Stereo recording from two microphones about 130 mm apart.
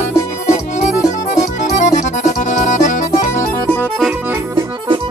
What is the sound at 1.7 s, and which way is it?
Music, 75° left (ahead or behind).